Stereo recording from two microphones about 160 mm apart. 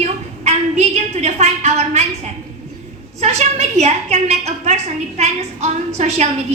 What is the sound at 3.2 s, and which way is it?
A woman's voice, 45° right (ahead or behind).